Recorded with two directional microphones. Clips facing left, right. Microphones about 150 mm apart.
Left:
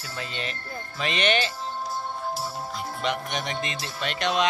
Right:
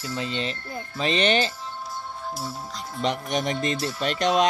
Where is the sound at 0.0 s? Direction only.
25° right (ahead or behind).